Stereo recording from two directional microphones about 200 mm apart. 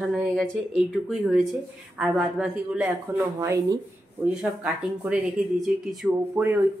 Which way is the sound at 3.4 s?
15° right (ahead or behind).